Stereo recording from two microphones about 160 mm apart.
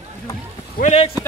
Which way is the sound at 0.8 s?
40° left (ahead or behind).